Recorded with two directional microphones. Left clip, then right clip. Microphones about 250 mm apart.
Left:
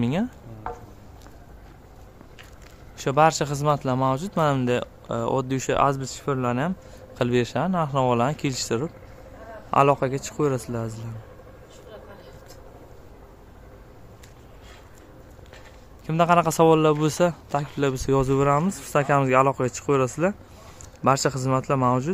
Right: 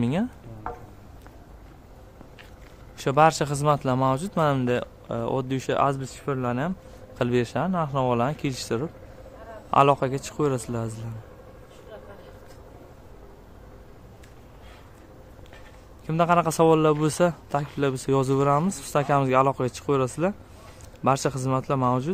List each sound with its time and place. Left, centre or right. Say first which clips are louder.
0.0 s speech: left 1 dB; centre
0.7 s a sound: left 1 dB; left
3.0 s speech: even; centre
16.1 s speech: left 2 dB; centre